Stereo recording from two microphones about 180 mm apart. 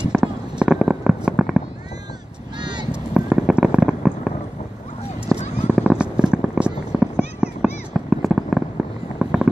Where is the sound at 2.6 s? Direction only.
25° right (ahead or behind).